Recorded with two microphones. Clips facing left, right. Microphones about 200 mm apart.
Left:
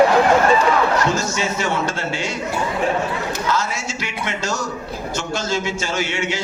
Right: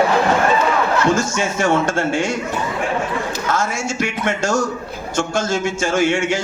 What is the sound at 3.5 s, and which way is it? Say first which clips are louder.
A man's voice: right 4 dB; 50° right (ahead or behind).